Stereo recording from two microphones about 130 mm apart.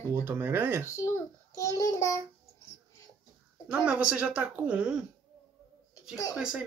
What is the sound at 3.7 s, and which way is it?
Speech, 10° right (ahead or behind).